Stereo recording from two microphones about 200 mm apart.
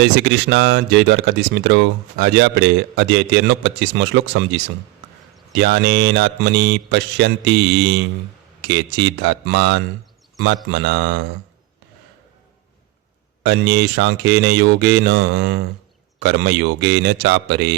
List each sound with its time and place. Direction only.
0.0 s speech: 65° right (ahead or behind)
13.5 s speech: 55° right (ahead or behind)